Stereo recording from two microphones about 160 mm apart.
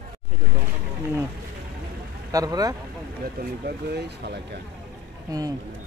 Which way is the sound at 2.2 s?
20° right (ahead or behind).